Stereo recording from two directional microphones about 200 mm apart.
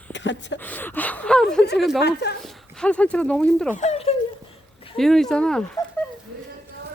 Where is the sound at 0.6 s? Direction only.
10° left (ahead or behind).